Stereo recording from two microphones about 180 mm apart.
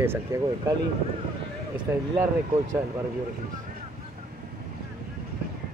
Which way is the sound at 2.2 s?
15° right (ahead or behind).